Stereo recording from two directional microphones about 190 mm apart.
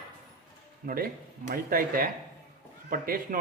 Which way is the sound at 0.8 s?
50° right (ahead or behind).